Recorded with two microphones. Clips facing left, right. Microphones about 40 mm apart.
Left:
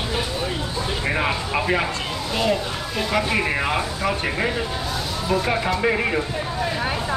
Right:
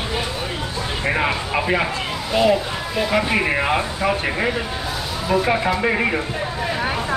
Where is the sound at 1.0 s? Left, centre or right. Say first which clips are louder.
Right 3 dB; centre.